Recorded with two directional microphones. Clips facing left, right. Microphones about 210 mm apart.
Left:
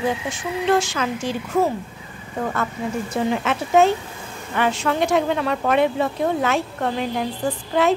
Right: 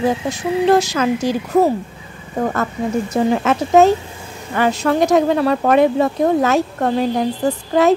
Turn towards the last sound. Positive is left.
turn(degrees=-40)  # may be behind; listen again after turning